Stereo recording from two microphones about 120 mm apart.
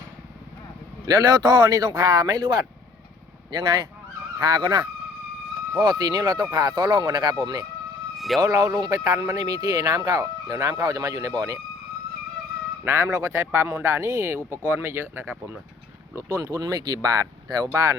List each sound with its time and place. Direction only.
1.0 s speech: 30° right (ahead or behind)
12.8 s speech: 20° right (ahead or behind)
16.1 s speech: 25° right (ahead or behind)